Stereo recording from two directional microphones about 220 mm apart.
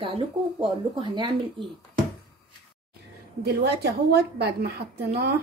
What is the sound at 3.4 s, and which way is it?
A woman's voice, 45° right (ahead or behind).